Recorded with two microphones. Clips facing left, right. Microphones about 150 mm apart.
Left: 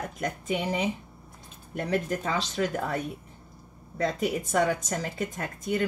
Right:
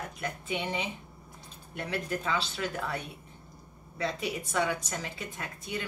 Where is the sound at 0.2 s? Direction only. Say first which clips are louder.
Left 5 dB; 40° left (ahead or behind).